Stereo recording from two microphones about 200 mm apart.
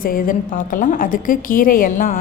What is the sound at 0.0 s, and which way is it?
A woman's voice, 45° left (ahead or behind).